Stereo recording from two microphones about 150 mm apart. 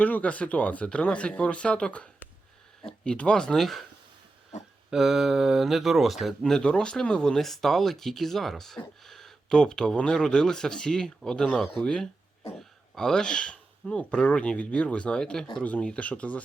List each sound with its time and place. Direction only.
0.0 s speech: 10° left (ahead or behind)
4.5 s a sound: 55° left (ahead or behind)
4.9 s speech: centre (ahead or behind)